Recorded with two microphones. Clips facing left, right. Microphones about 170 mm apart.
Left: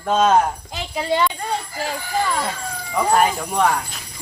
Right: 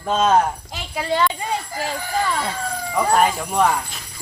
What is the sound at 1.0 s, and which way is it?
Speech, 15° left (ahead or behind).